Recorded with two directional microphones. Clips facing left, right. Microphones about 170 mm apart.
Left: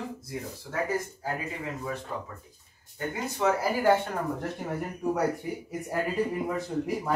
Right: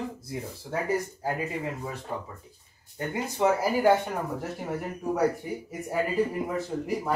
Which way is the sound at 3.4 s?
20° right (ahead or behind).